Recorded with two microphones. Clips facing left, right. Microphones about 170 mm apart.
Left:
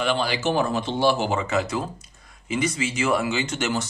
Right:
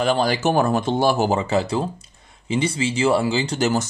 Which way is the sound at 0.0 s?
40° right (ahead or behind).